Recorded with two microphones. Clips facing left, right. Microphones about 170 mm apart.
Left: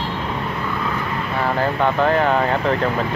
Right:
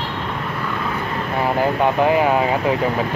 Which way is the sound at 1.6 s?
15° right (ahead or behind).